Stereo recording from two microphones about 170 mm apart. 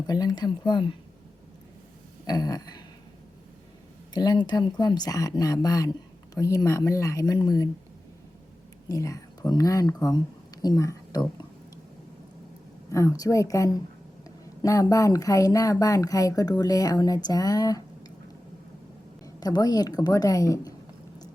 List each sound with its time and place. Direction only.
0.1 s speech: 25° left (ahead or behind)
2.2 s a sound: 20° left (ahead or behind)
4.1 s speech: 25° left (ahead or behind)
8.9 s speech: 20° left (ahead or behind)
12.9 s speech: 20° left (ahead or behind)
19.2 s a woman's voice: 20° left (ahead or behind)